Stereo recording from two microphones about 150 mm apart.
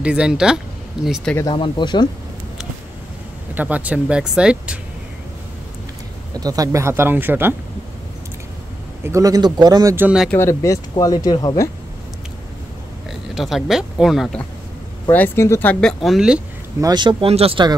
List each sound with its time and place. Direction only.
0.0 s speech: 5° right (ahead or behind)
1.5 s speech: 30° left (ahead or behind)
3.5 s speech: 10° right (ahead or behind)
6.3 s speech: 25° right (ahead or behind)
9.0 s speech: 20° right (ahead or behind)
9.9 s speech: 5° right (ahead or behind)
10.3 s speech: 20° left (ahead or behind)
13.3 s speech: centre (ahead or behind)
15.0 s speech: 15° left (ahead or behind); by 16.4 s 5° right (ahead or behind)
16.8 s speech: 30° right (ahead or behind)